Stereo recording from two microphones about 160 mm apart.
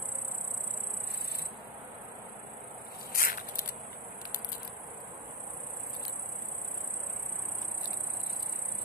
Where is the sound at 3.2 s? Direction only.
60° left (ahead or behind).